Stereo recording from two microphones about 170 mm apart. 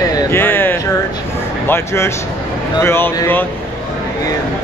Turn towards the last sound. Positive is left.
turn(degrees=15)  # may be behind; listen again after turning